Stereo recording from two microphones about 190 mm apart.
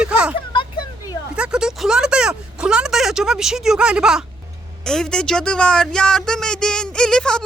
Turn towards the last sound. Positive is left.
turn(degrees=5)  # may be behind; listen again after turning